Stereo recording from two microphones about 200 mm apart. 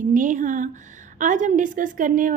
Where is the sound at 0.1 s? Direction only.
40° right (ahead or behind).